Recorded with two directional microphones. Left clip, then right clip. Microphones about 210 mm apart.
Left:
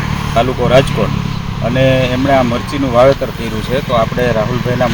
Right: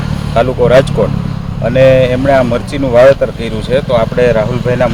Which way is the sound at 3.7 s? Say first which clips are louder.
Right 3 dB; 20° right (ahead or behind).